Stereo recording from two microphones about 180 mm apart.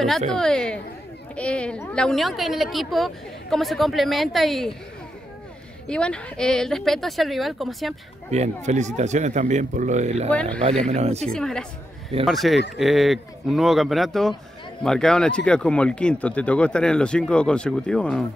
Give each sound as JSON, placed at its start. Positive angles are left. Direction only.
{"t": 0.3, "sound": "speech", "side_deg": 5}
{"t": 5.9, "sound": "speech", "side_deg": 5}
{"t": 8.3, "sound": "speech", "side_deg": -40}
{"t": 11.3, "sound": "speech", "side_deg": 5}